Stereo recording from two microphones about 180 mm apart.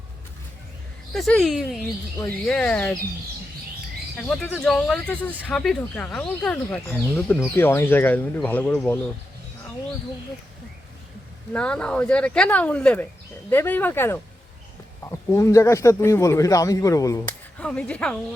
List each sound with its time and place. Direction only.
1.1 s speech: 5° left (ahead or behind)
4.3 s speech: 5° left (ahead or behind)
11.5 s speech: 5° left (ahead or behind)
17.6 s speech: 5° left (ahead or behind)